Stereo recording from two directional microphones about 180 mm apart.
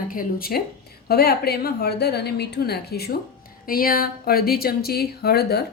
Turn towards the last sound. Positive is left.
turn(degrees=60)  # may be behind; listen again after turning